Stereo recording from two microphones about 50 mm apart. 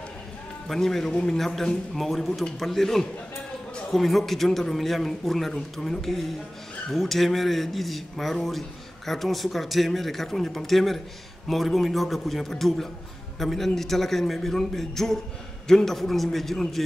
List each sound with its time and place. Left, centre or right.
0.7 s a man's voice: centre